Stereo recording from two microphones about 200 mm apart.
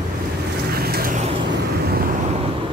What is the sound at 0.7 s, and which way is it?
Vehicle, 50° right (ahead or behind).